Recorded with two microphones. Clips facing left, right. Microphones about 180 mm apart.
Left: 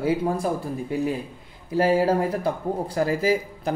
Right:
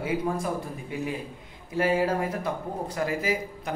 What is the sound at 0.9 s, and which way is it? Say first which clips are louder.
Speech: left 5 dB; 35° left (ahead or behind).